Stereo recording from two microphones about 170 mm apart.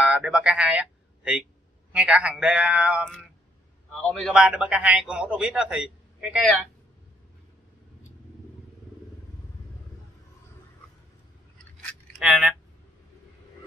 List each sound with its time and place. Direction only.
0.0 s a man's voice: 5° right (ahead or behind)
4.1 s a man's voice: centre (ahead or behind)
12.2 s a man's voice: 5° right (ahead or behind)